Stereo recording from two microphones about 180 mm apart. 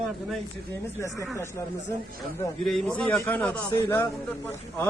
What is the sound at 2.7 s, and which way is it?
A man's voice, 5° left (ahead or behind).